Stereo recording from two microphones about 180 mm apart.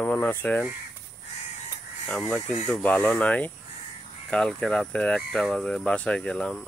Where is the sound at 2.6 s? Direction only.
5° left (ahead or behind).